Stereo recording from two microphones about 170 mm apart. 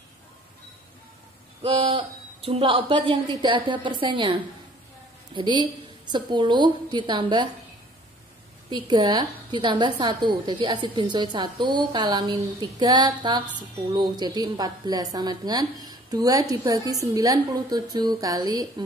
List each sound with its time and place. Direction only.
1.6 s a woman's voice: 30° right (ahead or behind)
8.6 s a woman's voice: 25° right (ahead or behind)